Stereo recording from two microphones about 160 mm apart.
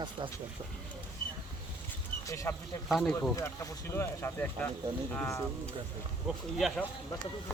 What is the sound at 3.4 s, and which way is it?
Speech, 15° left (ahead or behind).